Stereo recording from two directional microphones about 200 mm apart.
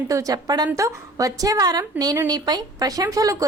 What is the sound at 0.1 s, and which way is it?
A woman's voice, 15° right (ahead or behind).